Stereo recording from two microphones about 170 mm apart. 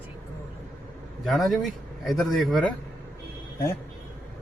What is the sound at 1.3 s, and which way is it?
Speech, centre (ahead or behind).